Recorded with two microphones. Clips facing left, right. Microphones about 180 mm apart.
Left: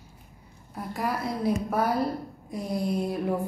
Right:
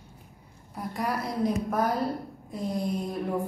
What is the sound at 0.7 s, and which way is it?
A woman's voice, centre (ahead or behind).